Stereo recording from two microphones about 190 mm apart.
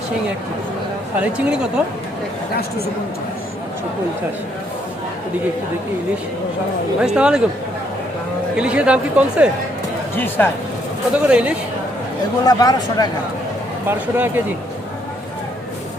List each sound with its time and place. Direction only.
1.2 s speech: 5° right (ahead or behind)
7.0 s speech: 5° right (ahead or behind)
8.5 s speech: 5° right (ahead or behind)
10.2 s speech: 10° left (ahead or behind)
11.1 s speech: 5° right (ahead or behind)
12.5 s speech: 20° left (ahead or behind)
13.8 s speech: 10° right (ahead or behind)